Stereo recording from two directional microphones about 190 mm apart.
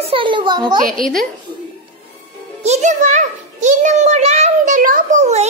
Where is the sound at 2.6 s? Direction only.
35° right (ahead or behind).